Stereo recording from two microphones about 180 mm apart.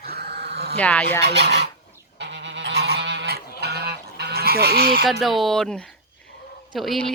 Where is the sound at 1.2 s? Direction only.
70° right (ahead or behind).